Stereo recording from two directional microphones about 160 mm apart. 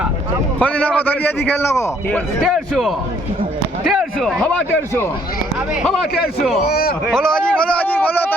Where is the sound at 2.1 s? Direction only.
Centre (ahead or behind).